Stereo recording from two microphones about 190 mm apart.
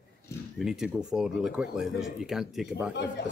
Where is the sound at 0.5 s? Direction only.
5° right (ahead or behind).